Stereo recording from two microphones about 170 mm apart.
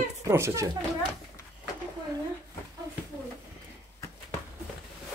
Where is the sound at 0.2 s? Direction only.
15° right (ahead or behind).